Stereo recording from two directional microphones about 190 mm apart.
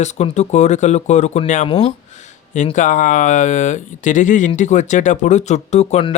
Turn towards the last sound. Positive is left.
turn(degrees=35)  # may be behind; listen again after turning